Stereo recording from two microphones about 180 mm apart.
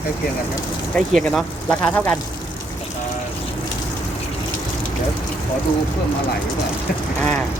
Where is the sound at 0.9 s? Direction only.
Centre (ahead or behind).